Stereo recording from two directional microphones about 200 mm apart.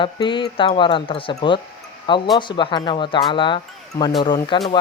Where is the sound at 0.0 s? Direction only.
25° left (ahead or behind).